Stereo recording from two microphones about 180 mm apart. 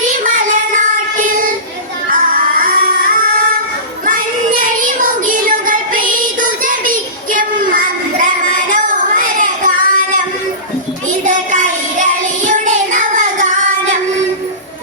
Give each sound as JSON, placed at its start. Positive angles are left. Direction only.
{"t": 0.3, "sound": "child singing", "side_deg": -45}
{"t": 2.0, "sound": "music", "side_deg": -50}
{"t": 4.6, "sound": "child singing", "side_deg": -50}
{"t": 11.3, "sound": "child singing", "side_deg": -45}
{"t": 12.5, "sound": "music", "side_deg": -45}